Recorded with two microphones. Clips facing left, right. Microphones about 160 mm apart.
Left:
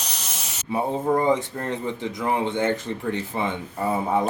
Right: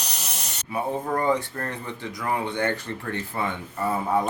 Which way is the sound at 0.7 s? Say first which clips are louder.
Left 4 dB; 25° left (ahead or behind).